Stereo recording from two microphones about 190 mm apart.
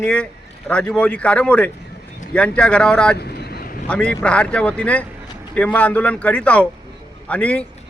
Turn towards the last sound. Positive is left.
turn(degrees=5)  # may be behind; listen again after turning